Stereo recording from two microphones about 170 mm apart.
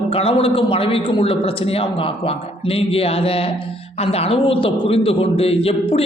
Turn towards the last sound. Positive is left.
turn(degrees=35)  # may be behind; listen again after turning